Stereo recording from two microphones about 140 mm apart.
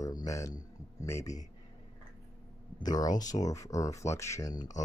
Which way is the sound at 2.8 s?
30° left (ahead or behind).